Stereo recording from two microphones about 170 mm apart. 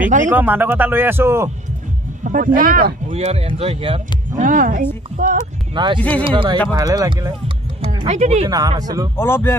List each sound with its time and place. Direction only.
0.3 s speech: 10° right (ahead or behind)
2.2 s speech: 55° right (ahead or behind)
3.2 s speech: 40° right (ahead or behind)
4.4 s a woman's voice: 50° right (ahead or behind)
5.9 s speech: 10° left (ahead or behind)
6.2 s speech: 30° right (ahead or behind)
7.8 s music: 30° right (ahead or behind)
8.5 s speech: 20° right (ahead or behind)
9.1 s speech: 15° left (ahead or behind)